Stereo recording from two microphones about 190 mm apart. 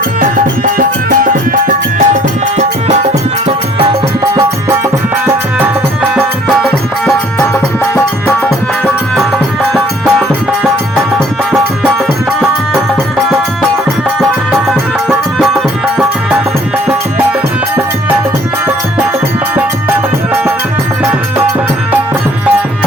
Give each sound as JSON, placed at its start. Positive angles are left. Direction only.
{"t": 0.2, "sound": "music", "side_deg": -45}
{"t": 2.6, "sound": "music", "side_deg": -35}
{"t": 4.2, "sound": "music", "side_deg": -15}
{"t": 9.7, "sound": "music", "side_deg": 0}